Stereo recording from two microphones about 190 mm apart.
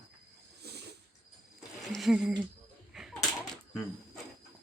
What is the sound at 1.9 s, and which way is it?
Speech, centre (ahead or behind).